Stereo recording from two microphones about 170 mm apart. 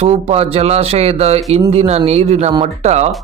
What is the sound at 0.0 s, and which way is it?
A man's voice, 40° right (ahead or behind).